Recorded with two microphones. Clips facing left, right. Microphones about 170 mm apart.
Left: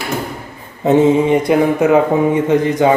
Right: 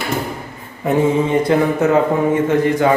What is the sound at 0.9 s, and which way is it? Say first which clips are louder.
Speech: left 5 dB; 20° left (ahead or behind).